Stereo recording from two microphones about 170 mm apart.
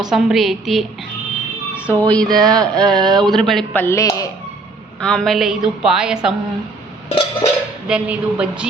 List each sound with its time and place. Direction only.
0.1 s a woman's voice: centre (ahead or behind)
1.9 s a woman's voice: 10° left (ahead or behind)
3.0 s speech: 25° right (ahead or behind)
3.2 s a man's voice: centre (ahead or behind)
4.9 s a woman's voice: 5° left (ahead or behind)
7.1 s a sound: 35° left (ahead or behind)
7.9 s a woman's voice: 5° right (ahead or behind)